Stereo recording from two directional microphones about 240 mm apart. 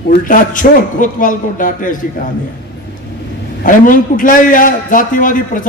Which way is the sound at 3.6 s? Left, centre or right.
Left.